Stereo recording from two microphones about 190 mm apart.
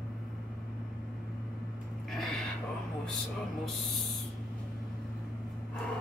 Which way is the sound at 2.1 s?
Centre (ahead or behind).